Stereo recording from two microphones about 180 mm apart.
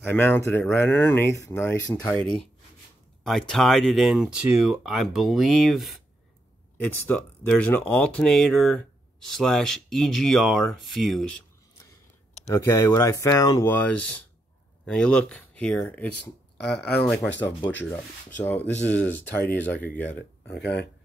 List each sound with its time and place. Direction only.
0.0 s speech: 10° left (ahead or behind)
12.5 s speech: 20° left (ahead or behind); by 17.3 s 5° left (ahead or behind)
18.4 s speech: 10° left (ahead or behind)
20.6 s speech: 70° left (ahead or behind)